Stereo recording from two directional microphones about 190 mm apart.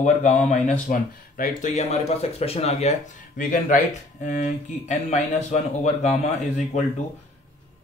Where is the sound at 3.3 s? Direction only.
45° left (ahead or behind).